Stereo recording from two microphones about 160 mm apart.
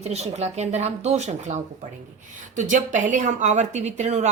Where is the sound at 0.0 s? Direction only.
40° right (ahead or behind).